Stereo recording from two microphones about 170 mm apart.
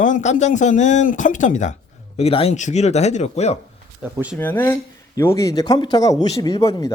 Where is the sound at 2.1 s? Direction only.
35° left (ahead or behind).